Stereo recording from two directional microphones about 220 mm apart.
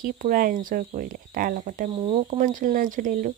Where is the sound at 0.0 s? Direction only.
40° right (ahead or behind).